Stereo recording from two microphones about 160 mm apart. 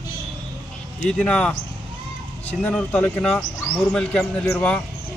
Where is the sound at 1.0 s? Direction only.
5° left (ahead or behind).